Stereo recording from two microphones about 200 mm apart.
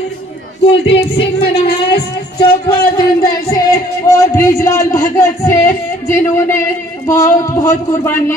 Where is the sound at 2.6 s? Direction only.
20° left (ahead or behind).